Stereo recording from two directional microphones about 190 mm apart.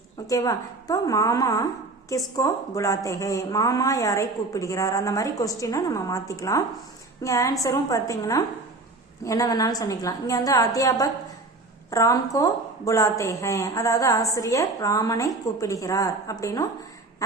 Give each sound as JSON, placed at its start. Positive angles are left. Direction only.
{"t": 0.3, "sound": "a woman's voice", "side_deg": 20}